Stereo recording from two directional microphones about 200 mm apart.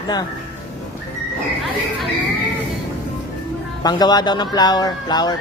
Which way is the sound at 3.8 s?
20° left (ahead or behind).